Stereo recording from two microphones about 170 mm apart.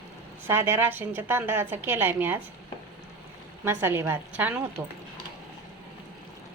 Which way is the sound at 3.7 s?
15° right (ahead or behind).